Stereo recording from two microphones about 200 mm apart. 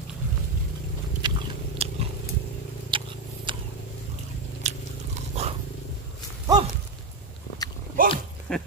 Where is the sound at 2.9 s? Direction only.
25° right (ahead or behind).